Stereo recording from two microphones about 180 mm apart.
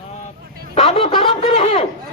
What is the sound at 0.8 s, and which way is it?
Speech, 30° left (ahead or behind).